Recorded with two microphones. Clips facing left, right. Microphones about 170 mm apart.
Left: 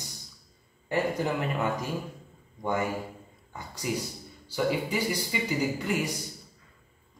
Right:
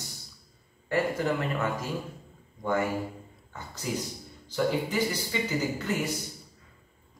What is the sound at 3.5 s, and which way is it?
A man's voice, 15° left (ahead or behind).